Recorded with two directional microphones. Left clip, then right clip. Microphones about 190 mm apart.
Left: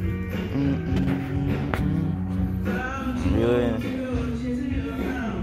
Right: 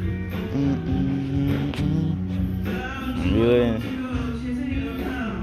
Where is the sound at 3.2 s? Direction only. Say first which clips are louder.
Right 3 dB; 50° right (ahead or behind).